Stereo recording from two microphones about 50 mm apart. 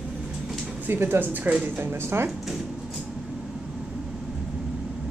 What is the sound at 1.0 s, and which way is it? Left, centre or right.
Speech, right.